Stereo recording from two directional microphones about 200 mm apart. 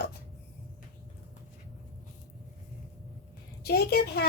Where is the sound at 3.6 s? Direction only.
50° left (ahead or behind).